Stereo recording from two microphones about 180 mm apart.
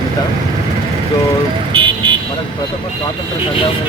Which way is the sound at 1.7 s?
30° right (ahead or behind).